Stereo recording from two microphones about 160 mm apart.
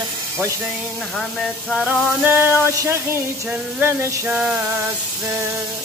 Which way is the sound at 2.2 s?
10° right (ahead or behind).